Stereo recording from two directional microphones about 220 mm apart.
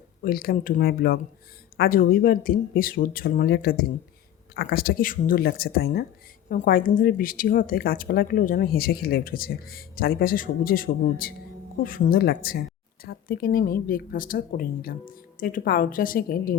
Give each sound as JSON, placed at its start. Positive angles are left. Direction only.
{"t": 0.2, "sound": "a woman's voice", "side_deg": 40}